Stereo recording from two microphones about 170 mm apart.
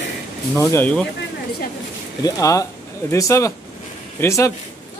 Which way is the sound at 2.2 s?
20° left (ahead or behind).